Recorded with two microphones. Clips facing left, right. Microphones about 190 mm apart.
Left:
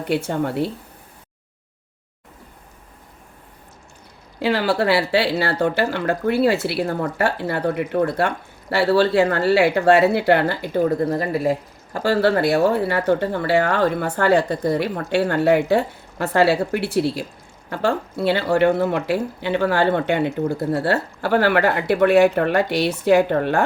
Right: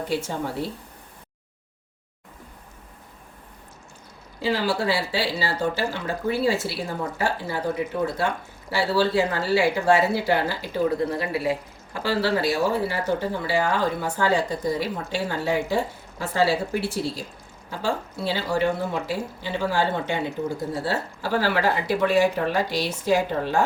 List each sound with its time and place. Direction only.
0.1 s speech: 60° left (ahead or behind)
4.4 s speech: 65° left (ahead or behind)